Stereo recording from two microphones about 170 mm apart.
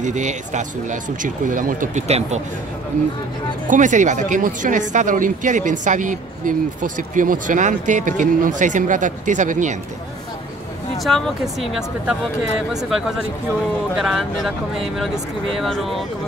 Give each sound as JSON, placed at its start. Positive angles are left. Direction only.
{"t": 0.0, "sound": "speech", "side_deg": -45}
{"t": 3.6, "sound": "speech", "side_deg": -50}
{"t": 11.0, "sound": "speech", "side_deg": 0}
{"t": 15.5, "sound": "speech", "side_deg": 0}